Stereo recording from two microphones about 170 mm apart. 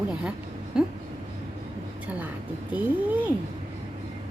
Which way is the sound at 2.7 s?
10° right (ahead or behind).